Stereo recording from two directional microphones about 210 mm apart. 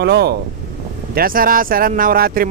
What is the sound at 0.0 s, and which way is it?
Speech, 50° right (ahead or behind).